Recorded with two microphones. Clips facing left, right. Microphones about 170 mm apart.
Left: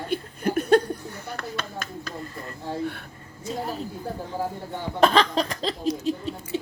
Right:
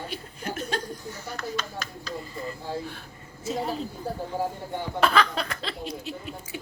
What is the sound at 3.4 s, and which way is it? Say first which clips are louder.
Speech: right 1 dB; centre (ahead or behind).